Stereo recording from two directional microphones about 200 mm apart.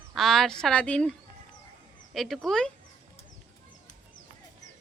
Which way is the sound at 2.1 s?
Centre (ahead or behind).